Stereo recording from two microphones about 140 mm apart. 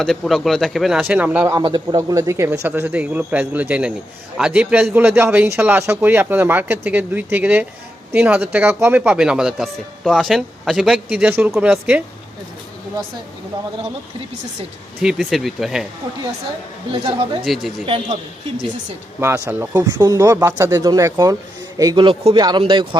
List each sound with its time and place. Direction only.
0.0 s speech: centre (ahead or behind)
1.5 s speech: 30° right (ahead or behind); by 12.0 s 10° right (ahead or behind)
15.0 s speech: centre (ahead or behind)
16.9 s a man's voice: 40° right (ahead or behind)
17.4 s speech: centre (ahead or behind)
17.8 s a man's voice: 40° right (ahead or behind)
19.5 s speech: 10° right (ahead or behind)
19.9 s a man's voice: 30° right (ahead or behind)
22.4 s a man's voice: 30° right (ahead or behind)